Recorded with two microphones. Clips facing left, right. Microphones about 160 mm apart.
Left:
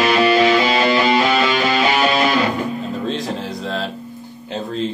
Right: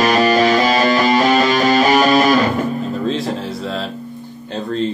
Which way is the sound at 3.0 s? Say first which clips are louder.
Right 3 dB; centre (ahead or behind).